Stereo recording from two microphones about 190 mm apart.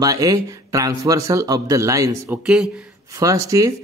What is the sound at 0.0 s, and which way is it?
Speech, 20° right (ahead or behind).